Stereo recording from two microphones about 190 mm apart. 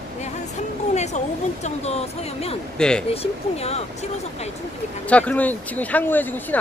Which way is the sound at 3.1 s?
30° left (ahead or behind).